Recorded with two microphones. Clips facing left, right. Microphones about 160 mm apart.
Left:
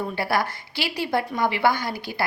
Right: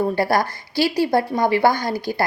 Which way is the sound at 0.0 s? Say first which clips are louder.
Right 6 dB; 40° right (ahead or behind).